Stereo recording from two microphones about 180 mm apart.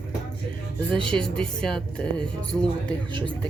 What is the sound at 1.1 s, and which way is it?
Speech, 5° left (ahead or behind).